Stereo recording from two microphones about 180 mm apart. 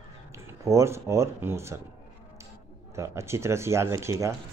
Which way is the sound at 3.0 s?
15° right (ahead or behind).